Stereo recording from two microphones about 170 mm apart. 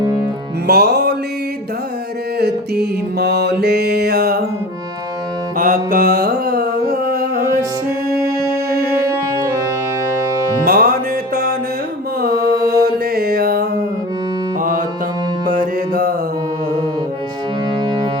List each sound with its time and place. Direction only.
0.7 s music: 70° right (ahead or behind)
2.4 s music: 70° right (ahead or behind)
5.5 s music: 55° right (ahead or behind)
10.7 s music: 60° right (ahead or behind)
12.2 s music: 65° right (ahead or behind)